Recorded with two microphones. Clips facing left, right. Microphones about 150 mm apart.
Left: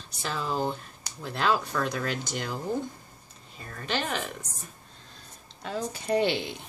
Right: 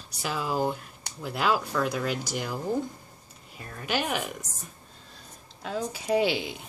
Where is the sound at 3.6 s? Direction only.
10° right (ahead or behind).